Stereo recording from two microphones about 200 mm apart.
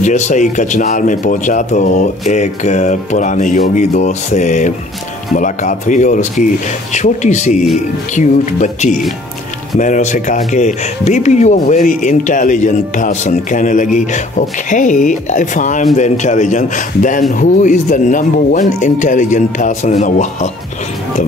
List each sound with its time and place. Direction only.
0.0 s speech: 35° left (ahead or behind)